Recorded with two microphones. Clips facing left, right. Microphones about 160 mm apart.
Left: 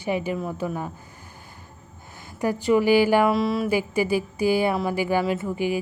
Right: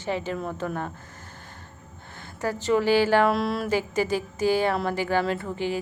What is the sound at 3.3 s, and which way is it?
Speech, centre (ahead or behind).